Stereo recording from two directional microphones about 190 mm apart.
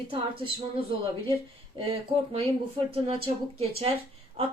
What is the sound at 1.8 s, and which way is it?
Speech, 35° right (ahead or behind).